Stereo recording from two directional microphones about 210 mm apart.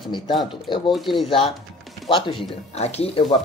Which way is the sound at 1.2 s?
25° left (ahead or behind).